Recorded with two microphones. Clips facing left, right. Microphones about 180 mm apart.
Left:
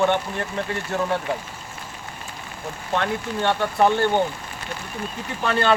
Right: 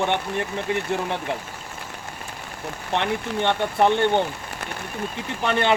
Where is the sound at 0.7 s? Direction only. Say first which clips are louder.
Right 4 dB; 20° right (ahead or behind).